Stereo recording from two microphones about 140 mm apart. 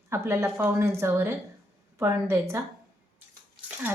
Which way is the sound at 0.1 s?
20° right (ahead or behind).